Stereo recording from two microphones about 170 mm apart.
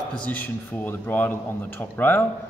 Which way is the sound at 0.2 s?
10° left (ahead or behind).